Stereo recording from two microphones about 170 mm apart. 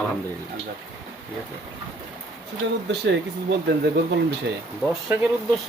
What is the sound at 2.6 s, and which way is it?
Speech, 90° right.